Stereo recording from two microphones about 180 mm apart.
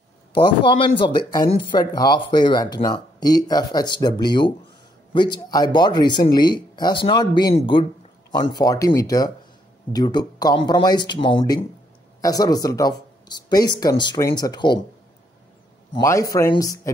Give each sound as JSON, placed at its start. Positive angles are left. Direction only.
{"t": 0.3, "sound": "speech", "side_deg": 25}
{"t": 16.0, "sound": "speech", "side_deg": 20}